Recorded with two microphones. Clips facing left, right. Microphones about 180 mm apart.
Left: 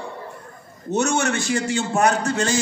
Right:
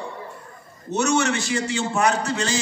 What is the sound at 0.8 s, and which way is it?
A man's voice, 50° left (ahead or behind).